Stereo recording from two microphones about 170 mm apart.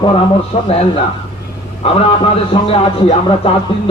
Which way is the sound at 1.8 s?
35° left (ahead or behind).